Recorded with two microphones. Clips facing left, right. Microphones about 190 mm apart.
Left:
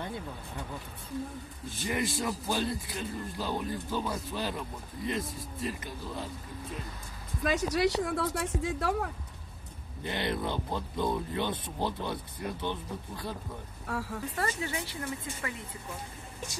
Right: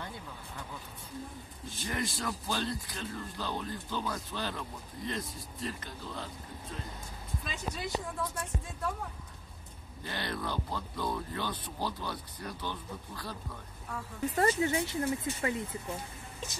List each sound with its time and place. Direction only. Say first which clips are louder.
2.1 s speech: left 4 dB; 15° left (ahead or behind)
7.4 s speech: left 13 dB; 80° left
10.0 s speech: left 5 dB; 20° left (ahead or behind)
13.8 s speech: left 7 dB; 80° left
14.3 s speech: right 7 dB; 25° right (ahead or behind)